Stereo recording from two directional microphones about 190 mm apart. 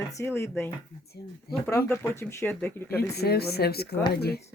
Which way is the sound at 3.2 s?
55° left (ahead or behind).